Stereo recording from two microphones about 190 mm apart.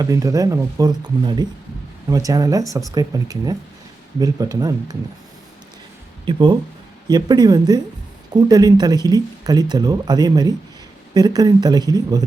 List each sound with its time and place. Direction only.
0.0 s speech: 15° right (ahead or behind)
6.2 s speech: 25° right (ahead or behind)